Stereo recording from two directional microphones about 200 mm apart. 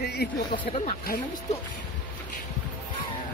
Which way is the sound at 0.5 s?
25° left (ahead or behind).